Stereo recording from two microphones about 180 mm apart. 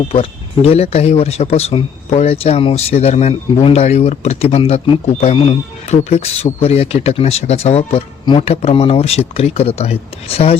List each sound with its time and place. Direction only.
0.1 s speech: 35° left (ahead or behind)